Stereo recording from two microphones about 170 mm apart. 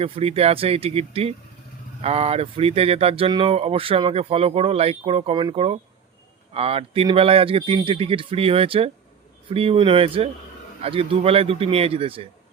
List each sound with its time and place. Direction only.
0.0 s speech: 35° right (ahead or behind)